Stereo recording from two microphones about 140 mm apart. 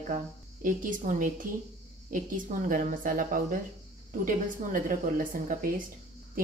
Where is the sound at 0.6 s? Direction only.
70° right (ahead or behind).